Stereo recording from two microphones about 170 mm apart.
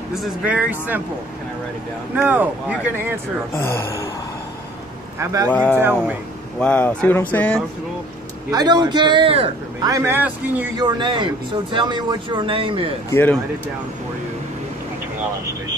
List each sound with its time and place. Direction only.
0.1 s speech: 5° right (ahead or behind)
2.1 s speech: 10° right (ahead or behind)
3.5 s speech: 15° left (ahead or behind)
5.2 s speech: 20° right (ahead or behind)
5.5 s speech: 5° left (ahead or behind)
5.8 s speech: 15° right (ahead or behind)
6.6 s speech: 5° left (ahead or behind)
8.5 s speech: 25° right (ahead or behind)
9.8 s speech: 15° right (ahead or behind)
10.8 s speech: 25° right (ahead or behind)
13.1 s speech: 10° left (ahead or behind)